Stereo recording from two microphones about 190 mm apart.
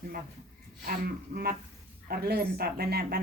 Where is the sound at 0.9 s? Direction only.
50° right (ahead or behind).